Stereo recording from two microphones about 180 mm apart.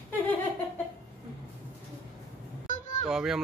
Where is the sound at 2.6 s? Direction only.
40° left (ahead or behind).